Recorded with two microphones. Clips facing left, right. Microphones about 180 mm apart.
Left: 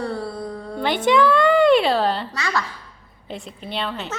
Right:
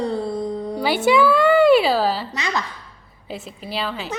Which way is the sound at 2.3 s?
20° right (ahead or behind).